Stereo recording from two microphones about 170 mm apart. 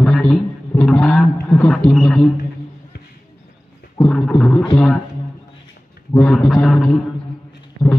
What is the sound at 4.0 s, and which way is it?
Speech, centre (ahead or behind).